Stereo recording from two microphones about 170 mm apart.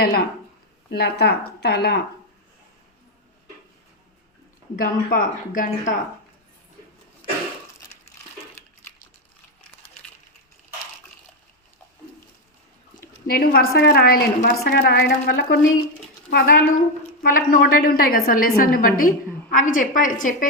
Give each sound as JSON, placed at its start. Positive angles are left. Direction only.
{"t": 0.0, "sound": "a woman's voice", "side_deg": 65}
{"t": 4.8, "sound": "a woman's voice", "side_deg": 55}
{"t": 13.2, "sound": "a woman's voice", "side_deg": 60}